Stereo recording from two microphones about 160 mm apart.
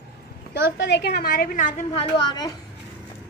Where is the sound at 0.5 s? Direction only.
90° left; by 1.8 s 60° left (ahead or behind).